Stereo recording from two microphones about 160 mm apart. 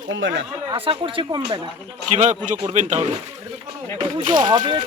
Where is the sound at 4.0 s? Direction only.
30° right (ahead or behind).